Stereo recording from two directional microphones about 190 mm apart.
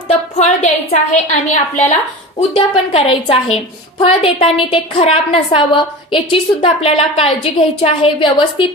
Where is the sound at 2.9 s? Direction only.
30° left (ahead or behind).